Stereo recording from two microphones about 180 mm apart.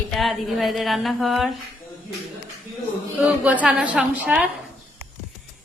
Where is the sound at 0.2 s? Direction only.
Centre (ahead or behind).